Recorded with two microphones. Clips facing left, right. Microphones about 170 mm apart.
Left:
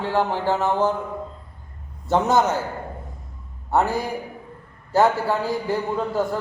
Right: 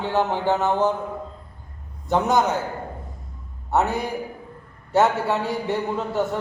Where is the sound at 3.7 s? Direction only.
Centre (ahead or behind).